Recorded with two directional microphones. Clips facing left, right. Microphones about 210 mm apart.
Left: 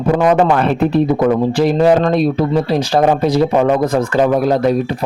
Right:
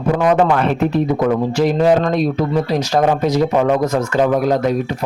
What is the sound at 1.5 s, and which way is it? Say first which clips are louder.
A man's voice: left 1 dB; 35° left (ahead or behind).